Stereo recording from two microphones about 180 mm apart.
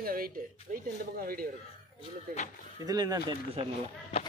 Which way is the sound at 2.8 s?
20° right (ahead or behind).